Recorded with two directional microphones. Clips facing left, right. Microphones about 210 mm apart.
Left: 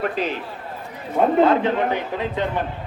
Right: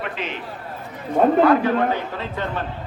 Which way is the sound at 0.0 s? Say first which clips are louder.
Left 6 dB; 35° left (ahead or behind).